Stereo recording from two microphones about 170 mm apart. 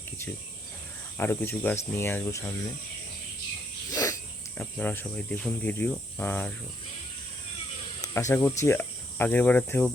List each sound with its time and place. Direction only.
1.2 s speech: 10° left (ahead or behind)
3.9 s cricket: 20° left (ahead or behind)
4.5 s speech: 10° left (ahead or behind)
8.0 s speech: 15° left (ahead or behind)